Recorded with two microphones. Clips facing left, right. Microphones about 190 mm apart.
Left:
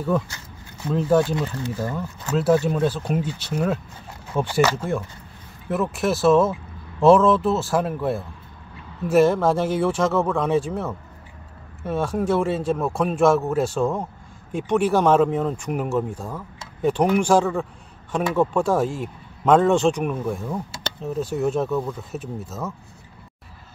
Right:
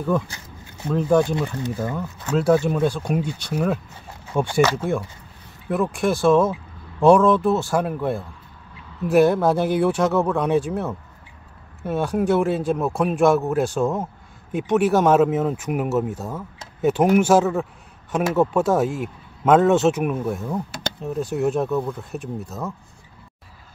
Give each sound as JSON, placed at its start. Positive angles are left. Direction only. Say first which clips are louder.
{"t": 1.2, "sound": "speech", "louder": "right 1 dB", "side_deg": -15}
{"t": 2.0, "sound": "speech", "louder": "right 1 dB", "side_deg": 5}